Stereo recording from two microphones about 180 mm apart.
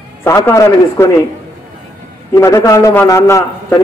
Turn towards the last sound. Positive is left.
turn(degrees=15)  # may be behind; listen again after turning